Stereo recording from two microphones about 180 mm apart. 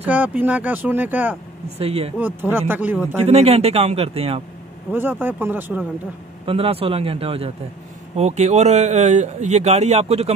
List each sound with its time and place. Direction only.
0.0 s speech: 10° right (ahead or behind)
1.8 s speech: 35° right (ahead or behind)
2.1 s speech: 10° right (ahead or behind)
3.3 s speech: 35° right (ahead or behind)
4.9 s speech: 10° right (ahead or behind)
6.4 s speech: 30° right (ahead or behind)